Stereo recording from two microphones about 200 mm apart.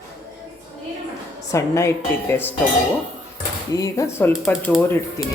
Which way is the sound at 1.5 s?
15° left (ahead or behind).